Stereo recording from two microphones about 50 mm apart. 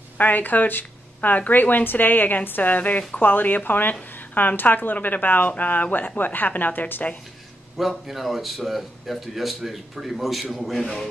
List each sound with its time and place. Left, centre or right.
0.2 s a woman's voice: left
3.2 s speech: left
7.7 s speech: centre